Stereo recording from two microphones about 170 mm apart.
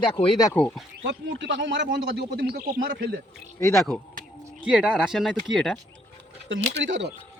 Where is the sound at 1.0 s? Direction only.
90° right.